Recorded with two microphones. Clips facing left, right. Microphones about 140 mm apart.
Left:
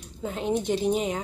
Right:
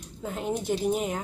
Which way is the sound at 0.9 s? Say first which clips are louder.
Left 2 dB; centre (ahead or behind).